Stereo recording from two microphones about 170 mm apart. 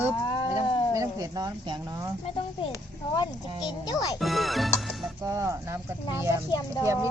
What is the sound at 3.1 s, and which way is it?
Speech, 25° left (ahead or behind).